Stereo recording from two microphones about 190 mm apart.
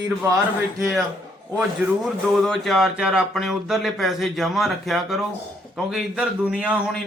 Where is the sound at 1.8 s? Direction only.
10° right (ahead or behind).